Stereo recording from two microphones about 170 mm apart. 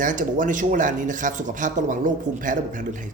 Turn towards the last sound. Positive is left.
turn(degrees=-50)  # may be behind; listen again after turning